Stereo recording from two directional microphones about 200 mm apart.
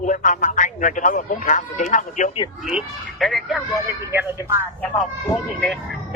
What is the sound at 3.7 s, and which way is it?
Speech, 10° right (ahead or behind).